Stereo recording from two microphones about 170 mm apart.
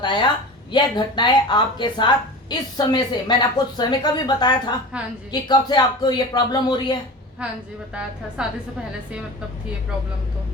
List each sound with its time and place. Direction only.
0.7 s a woman's voice: 25° left (ahead or behind)
4.9 s a woman's voice: 5° right (ahead or behind)
5.3 s a woman's voice: 25° left (ahead or behind)
7.4 s a woman's voice: 5° right (ahead or behind)